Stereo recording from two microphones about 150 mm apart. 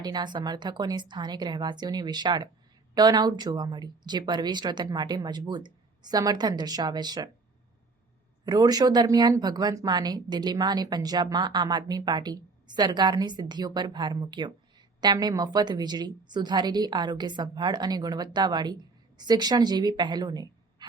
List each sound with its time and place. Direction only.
0.0 s speech: 30° right (ahead or behind)
8.4 s speech: 25° right (ahead or behind)